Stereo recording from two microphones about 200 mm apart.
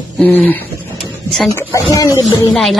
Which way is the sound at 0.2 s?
10° left (ahead or behind).